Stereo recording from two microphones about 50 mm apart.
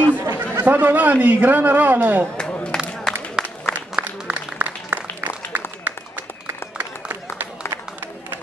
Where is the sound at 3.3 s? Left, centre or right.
Right.